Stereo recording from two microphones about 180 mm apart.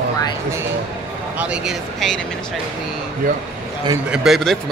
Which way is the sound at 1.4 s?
5° right (ahead or behind).